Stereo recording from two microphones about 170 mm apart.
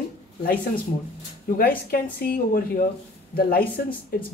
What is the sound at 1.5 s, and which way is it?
A woman's voice, 60° left (ahead or behind).